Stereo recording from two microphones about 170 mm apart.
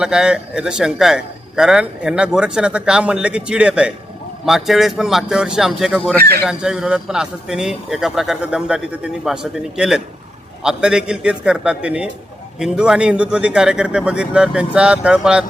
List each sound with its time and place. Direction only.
0.0 s a man's voice: 5° right (ahead or behind)
6.1 s speech: 65° right (ahead or behind)
6.4 s a man's voice: 5° right (ahead or behind)